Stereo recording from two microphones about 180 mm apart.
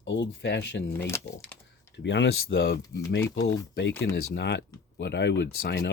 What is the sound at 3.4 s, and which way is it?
Speech, 75° left (ahead or behind).